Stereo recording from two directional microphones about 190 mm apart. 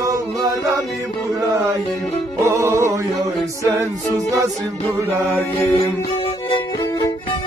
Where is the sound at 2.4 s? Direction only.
15° right (ahead or behind).